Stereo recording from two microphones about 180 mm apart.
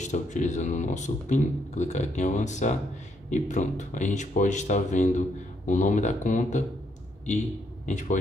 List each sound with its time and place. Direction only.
0.0 s a man's voice: 40° left (ahead or behind)